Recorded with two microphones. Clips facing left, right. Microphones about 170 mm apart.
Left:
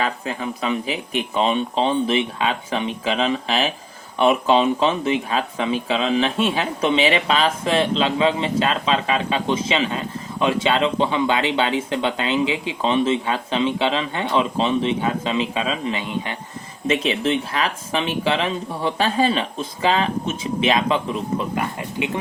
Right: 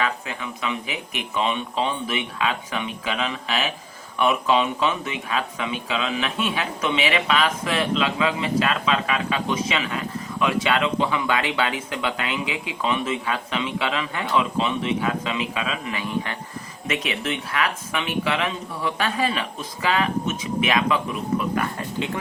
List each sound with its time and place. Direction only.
0.0 s speech: 35° left (ahead or behind); by 22.2 s 15° left (ahead or behind)